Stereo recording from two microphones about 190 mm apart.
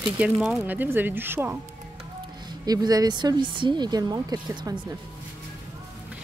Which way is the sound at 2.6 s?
20° right (ahead or behind).